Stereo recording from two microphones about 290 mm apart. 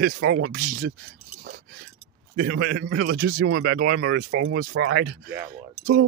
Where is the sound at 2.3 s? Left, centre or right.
Right.